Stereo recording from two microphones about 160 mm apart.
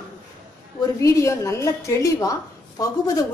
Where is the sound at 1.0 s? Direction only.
20° left (ahead or behind).